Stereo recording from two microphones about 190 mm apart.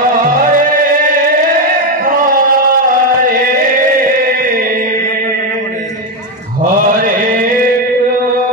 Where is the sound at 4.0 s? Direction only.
50° right (ahead or behind).